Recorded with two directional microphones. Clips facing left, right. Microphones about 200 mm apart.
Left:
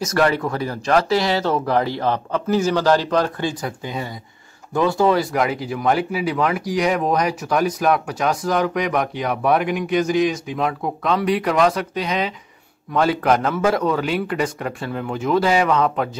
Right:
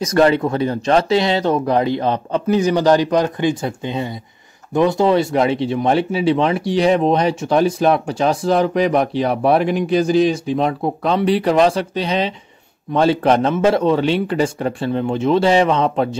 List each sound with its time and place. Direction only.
0.0 s speech: 20° right (ahead or behind)